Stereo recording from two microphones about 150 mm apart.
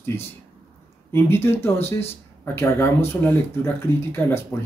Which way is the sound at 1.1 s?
15° left (ahead or behind).